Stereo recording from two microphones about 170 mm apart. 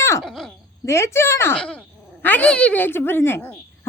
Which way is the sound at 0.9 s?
15° left (ahead or behind).